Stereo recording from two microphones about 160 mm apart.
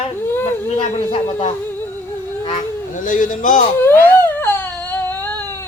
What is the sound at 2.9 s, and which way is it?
Speech, 55° left (ahead or behind).